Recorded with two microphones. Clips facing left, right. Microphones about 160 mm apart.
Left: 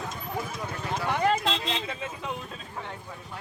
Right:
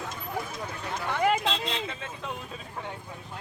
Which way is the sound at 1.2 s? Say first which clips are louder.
Right 1 dB; 5° right (ahead or behind).